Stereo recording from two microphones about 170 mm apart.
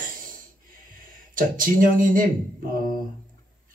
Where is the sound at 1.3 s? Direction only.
55° right (ahead or behind).